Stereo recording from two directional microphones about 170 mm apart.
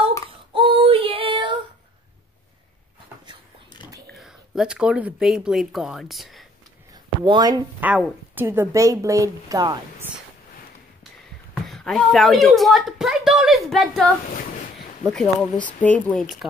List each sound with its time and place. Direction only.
0.3 s child singing: 30° right (ahead or behind)
4.1 s speech: centre (ahead or behind)
7.2 s a woman's voice: 25° right (ahead or behind)
7.8 s a woman's voice: 10° right (ahead or behind)
11.5 s speech: centre (ahead or behind)